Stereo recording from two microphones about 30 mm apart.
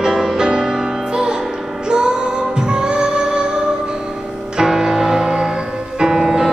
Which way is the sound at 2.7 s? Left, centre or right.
Right.